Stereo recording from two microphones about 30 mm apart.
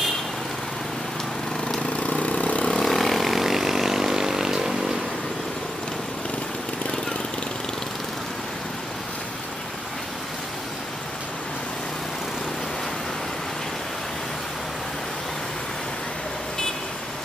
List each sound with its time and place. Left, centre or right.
2.0 s vehicle: left
2.8 s vehicle: centre